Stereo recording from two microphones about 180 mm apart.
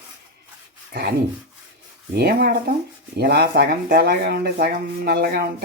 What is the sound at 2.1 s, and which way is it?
Speech, 60° right (ahead or behind).